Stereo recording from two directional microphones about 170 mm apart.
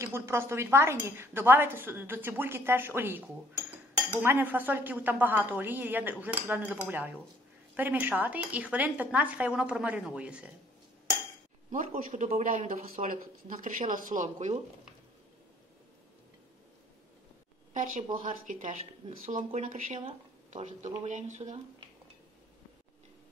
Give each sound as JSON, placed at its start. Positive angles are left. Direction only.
{"t": 0.0, "sound": "speech", "side_deg": -15}
{"t": 11.7, "sound": "speech", "side_deg": -55}
{"t": 18.5, "sound": "speech", "side_deg": -50}